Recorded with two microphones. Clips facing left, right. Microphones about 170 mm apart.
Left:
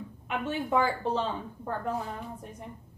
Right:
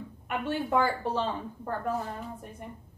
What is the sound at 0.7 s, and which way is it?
Finger snapping, 5° right (ahead or behind).